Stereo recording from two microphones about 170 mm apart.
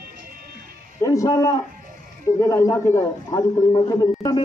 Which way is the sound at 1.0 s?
20° left (ahead or behind).